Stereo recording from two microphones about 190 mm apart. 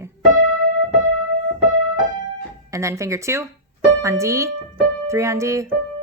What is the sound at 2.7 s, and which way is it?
Speech, 15° right (ahead or behind).